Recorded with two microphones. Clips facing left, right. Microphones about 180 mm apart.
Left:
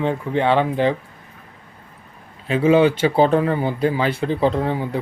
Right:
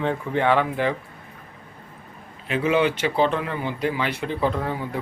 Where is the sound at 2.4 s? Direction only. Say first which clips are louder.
Left 6 dB; 30° left (ahead or behind).